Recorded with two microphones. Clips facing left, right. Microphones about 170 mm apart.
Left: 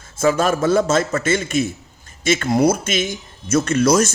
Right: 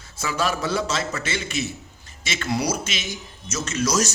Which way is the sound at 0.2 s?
50° left (ahead or behind).